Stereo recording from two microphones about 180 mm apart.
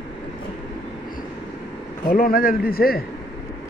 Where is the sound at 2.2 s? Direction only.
50° left (ahead or behind).